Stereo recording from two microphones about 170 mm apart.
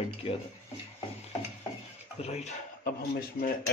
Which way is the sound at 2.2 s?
40° left (ahead or behind).